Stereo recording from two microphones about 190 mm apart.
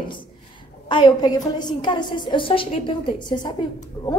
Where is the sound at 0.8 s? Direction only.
25° left (ahead or behind).